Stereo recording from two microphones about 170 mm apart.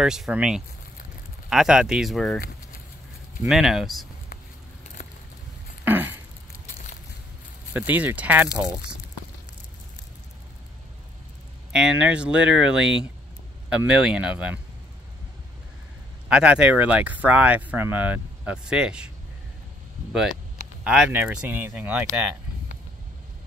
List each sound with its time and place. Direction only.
0.0 s speech: 5° right (ahead or behind)
3.4 s speech: centre (ahead or behind)
5.0 s a sound: 50° left (ahead or behind)
5.9 s a sound: 10° right (ahead or behind)
7.7 s speech: 10° right (ahead or behind)
11.7 s speech: 5° right (ahead or behind)
16.3 s speech: 5° right (ahead or behind)
20.1 s speech: centre (ahead or behind)